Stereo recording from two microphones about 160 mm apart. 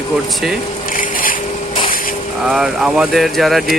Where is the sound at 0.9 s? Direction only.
60° left (ahead or behind).